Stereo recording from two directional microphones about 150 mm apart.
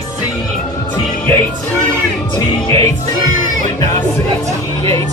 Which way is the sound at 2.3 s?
20° left (ahead or behind).